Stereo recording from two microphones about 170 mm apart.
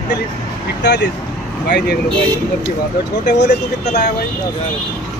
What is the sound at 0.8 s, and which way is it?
Speech, 85° left.